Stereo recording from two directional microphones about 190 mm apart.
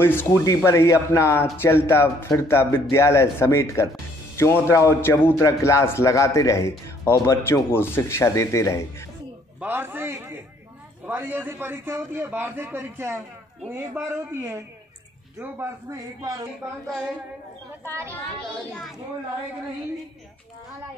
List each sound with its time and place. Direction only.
0.0 s speech: 10° left (ahead or behind)
9.6 s a man's voice: 10° right (ahead or behind)
17.8 s a man's voice: 15° right (ahead or behind)
18.7 s speech: 5° left (ahead or behind)